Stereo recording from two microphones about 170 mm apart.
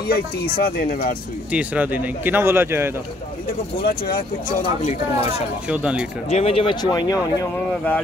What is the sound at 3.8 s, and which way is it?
Speech, 60° left (ahead or behind).